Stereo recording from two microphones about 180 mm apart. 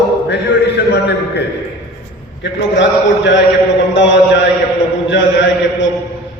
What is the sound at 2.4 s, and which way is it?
A man's voice, 80° left.